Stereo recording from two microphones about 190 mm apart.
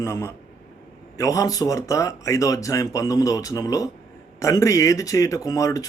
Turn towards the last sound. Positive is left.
turn(degrees=15)  # may be behind; listen again after turning